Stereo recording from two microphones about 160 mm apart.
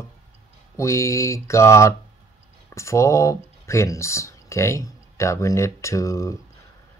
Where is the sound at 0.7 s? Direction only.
20° left (ahead or behind).